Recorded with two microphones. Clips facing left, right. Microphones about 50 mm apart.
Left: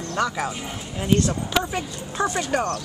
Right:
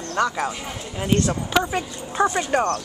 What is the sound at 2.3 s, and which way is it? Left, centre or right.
Speech, right.